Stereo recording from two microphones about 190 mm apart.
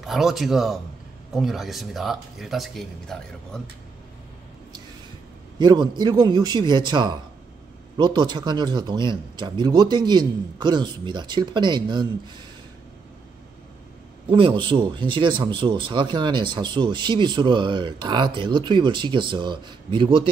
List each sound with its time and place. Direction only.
0.0 s speech: centre (ahead or behind)
5.6 s speech: 25° right (ahead or behind)
14.2 s speech: 25° right (ahead or behind)